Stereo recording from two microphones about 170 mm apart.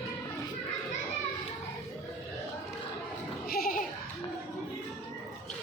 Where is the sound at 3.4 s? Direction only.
60° left (ahead or behind).